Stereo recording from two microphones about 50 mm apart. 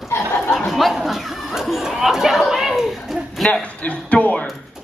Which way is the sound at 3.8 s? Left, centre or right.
Left.